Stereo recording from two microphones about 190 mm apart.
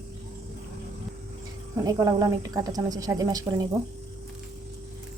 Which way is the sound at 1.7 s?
15° right (ahead or behind).